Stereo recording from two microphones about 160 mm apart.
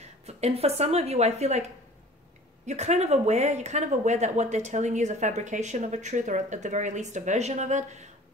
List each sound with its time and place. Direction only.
0.3 s a woman's voice: 40° right (ahead or behind)